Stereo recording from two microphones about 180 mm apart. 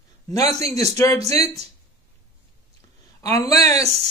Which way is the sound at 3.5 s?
35° right (ahead or behind).